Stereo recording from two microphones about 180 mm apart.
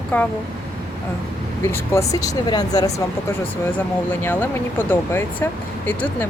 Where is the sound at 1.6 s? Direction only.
15° left (ahead or behind).